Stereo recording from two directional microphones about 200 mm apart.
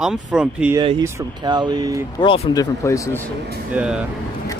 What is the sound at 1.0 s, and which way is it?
Speech, 20° right (ahead or behind).